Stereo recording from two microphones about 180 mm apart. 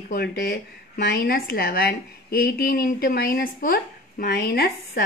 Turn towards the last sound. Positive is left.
turn(degrees=60)  # may be behind; listen again after turning